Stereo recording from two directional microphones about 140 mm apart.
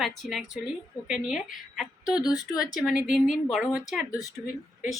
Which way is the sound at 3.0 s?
5° right (ahead or behind).